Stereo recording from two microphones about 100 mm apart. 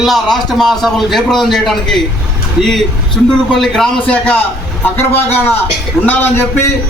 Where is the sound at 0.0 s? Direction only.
Centre (ahead or behind).